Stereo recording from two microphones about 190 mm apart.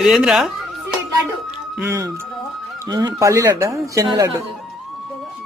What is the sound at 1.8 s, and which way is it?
Speech, 15° right (ahead or behind).